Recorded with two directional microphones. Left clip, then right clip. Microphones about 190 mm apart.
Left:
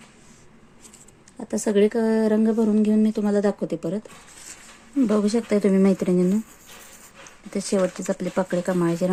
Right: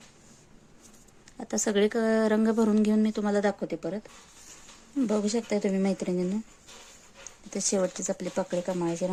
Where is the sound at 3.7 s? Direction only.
20° left (ahead or behind).